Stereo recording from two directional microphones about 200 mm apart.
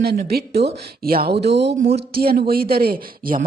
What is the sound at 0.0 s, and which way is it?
A woman's voice, 50° right (ahead or behind).